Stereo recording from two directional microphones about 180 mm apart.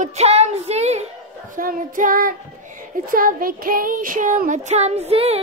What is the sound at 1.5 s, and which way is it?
Speech, 50° right (ahead or behind).